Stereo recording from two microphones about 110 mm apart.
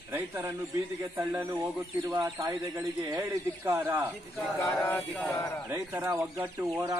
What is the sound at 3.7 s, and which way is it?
Speech, 20° right (ahead or behind).